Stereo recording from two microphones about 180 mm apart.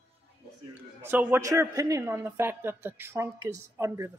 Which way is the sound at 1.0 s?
15° right (ahead or behind).